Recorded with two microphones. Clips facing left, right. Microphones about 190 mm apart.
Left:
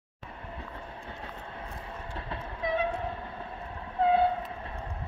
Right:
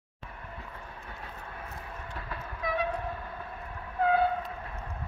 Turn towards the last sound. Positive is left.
turn(degrees=25)  # may be behind; listen again after turning